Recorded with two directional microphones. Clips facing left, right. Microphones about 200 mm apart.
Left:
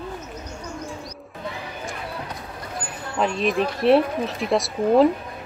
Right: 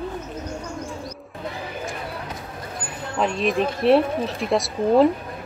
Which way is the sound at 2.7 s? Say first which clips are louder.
Even; centre (ahead or behind).